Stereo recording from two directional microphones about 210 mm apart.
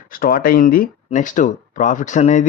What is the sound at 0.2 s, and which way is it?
Speech, 45° left (ahead or behind).